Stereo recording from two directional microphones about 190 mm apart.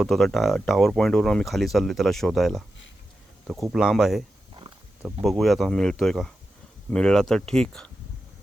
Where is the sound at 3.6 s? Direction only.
Centre (ahead or behind).